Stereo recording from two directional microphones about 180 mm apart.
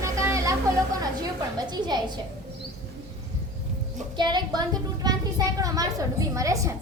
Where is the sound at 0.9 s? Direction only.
20° right (ahead or behind).